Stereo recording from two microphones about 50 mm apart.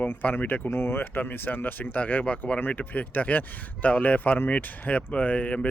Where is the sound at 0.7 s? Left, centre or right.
Left.